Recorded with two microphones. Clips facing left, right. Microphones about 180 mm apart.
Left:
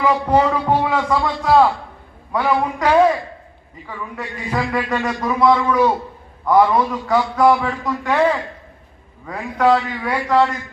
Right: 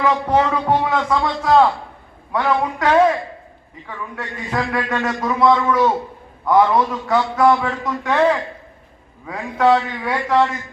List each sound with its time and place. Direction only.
0.0 s a man's voice: 10° left (ahead or behind)